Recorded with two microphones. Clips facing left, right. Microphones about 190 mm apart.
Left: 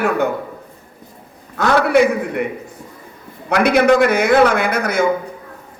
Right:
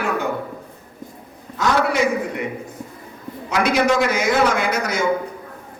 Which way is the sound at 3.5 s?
60° left (ahead or behind).